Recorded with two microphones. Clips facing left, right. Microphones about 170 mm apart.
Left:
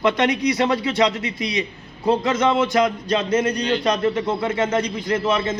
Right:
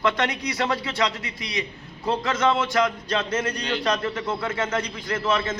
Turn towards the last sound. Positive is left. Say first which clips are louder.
# left 4 dB
turn(degrees=20)  # may be behind; listen again after turning